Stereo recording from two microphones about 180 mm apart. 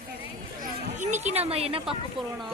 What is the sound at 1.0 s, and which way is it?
Speech, 40° right (ahead or behind).